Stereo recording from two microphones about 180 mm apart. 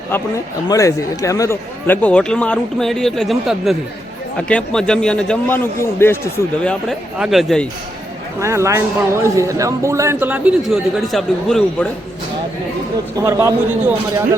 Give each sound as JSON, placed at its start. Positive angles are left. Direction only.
{"t": 0.1, "sound": "a man's voice", "side_deg": 20}
{"t": 8.4, "sound": "speech", "side_deg": -15}
{"t": 13.1, "sound": "speech", "side_deg": -15}